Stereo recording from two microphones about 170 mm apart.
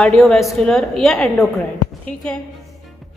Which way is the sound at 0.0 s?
Centre (ahead or behind).